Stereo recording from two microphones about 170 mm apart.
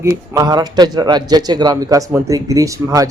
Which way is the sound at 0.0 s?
20° right (ahead or behind).